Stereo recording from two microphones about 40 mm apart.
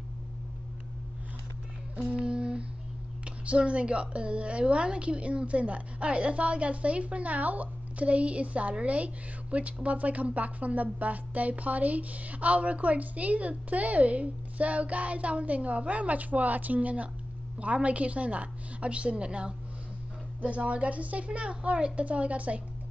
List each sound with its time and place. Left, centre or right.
2.0 s music: right
3.4 s a woman's voice: right